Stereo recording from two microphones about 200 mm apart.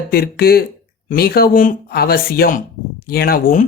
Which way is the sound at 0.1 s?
50° left (ahead or behind).